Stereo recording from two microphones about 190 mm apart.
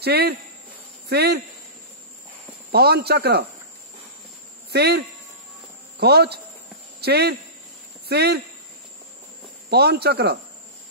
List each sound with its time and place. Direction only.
0.0 s speech: 55° right (ahead or behind)
2.7 s speech: 60° right (ahead or behind)
4.6 s speech: 60° right (ahead or behind)
9.7 s speech: 60° right (ahead or behind)